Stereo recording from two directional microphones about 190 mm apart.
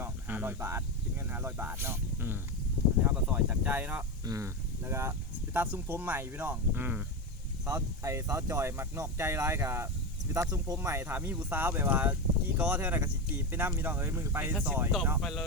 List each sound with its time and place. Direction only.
0.0 s cricket: 10° right (ahead or behind)
1.3 s speech: 10° right (ahead or behind)
15.2 s speech: centre (ahead or behind)